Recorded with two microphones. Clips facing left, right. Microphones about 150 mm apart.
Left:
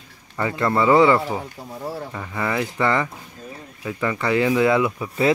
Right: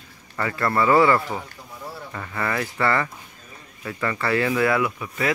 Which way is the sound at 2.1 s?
10° left (ahead or behind).